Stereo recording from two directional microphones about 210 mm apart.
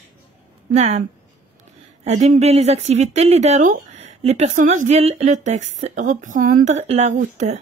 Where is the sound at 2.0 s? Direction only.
30° right (ahead or behind).